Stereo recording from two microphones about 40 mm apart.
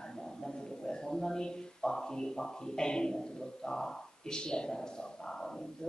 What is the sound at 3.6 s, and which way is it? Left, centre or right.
A man's voice, centre.